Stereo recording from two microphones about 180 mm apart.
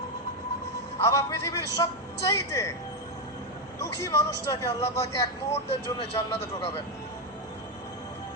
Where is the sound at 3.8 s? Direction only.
20° left (ahead or behind).